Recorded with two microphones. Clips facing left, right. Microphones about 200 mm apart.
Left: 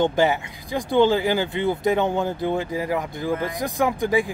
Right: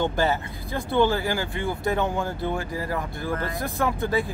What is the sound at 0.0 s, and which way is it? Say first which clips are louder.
Speech: left 4 dB; 15° left (ahead or behind).